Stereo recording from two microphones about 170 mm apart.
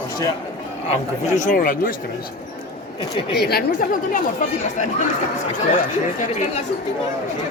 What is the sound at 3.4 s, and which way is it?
Speech, 65° left (ahead or behind).